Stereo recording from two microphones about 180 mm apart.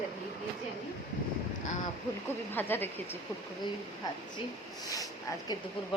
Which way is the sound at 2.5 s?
10° left (ahead or behind).